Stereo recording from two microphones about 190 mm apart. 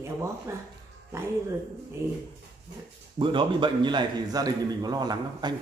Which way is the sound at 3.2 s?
25° right (ahead or behind).